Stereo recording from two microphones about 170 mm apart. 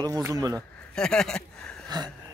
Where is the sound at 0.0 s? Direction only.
20° right (ahead or behind).